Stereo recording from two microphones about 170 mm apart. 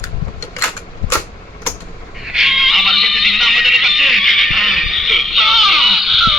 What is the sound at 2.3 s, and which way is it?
Neigh, centre (ahead or behind).